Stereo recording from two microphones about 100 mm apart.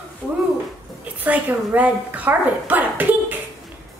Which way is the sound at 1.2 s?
15° right (ahead or behind).